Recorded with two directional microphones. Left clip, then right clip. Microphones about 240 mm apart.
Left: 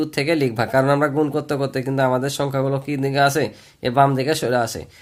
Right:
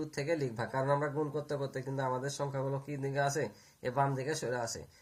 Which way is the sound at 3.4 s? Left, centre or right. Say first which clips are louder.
Left 14 dB; left.